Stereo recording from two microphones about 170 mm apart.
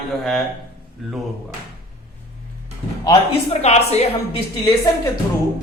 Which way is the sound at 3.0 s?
30° left (ahead or behind).